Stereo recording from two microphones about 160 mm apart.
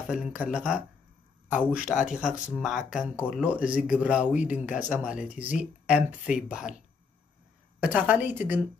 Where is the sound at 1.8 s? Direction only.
50° left (ahead or behind).